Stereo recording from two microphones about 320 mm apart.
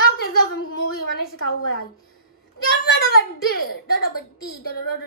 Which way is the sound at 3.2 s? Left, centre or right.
Left.